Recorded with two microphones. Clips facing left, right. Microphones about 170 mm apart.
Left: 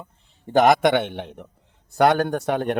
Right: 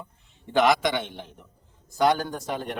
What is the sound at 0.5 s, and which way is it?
Speech, 50° left (ahead or behind).